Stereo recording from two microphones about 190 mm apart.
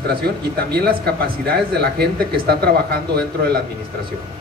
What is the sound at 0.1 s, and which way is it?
A man's voice, 55° right (ahead or behind).